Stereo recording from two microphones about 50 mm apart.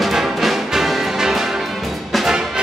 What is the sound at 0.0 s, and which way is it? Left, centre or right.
Music, centre.